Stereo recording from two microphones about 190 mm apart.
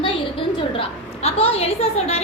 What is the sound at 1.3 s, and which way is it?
Speech, 30° left (ahead or behind).